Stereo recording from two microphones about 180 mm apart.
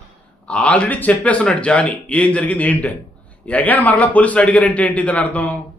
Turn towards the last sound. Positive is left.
turn(degrees=10)  # may be behind; listen again after turning